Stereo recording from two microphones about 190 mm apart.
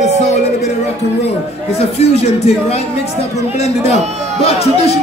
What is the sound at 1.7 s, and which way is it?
Speech, 35° left (ahead or behind).